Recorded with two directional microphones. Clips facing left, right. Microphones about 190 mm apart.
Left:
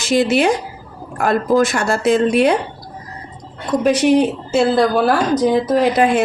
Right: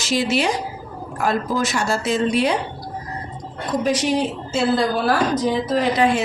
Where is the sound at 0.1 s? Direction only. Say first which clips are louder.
Left 6 dB; 55° left (ahead or behind).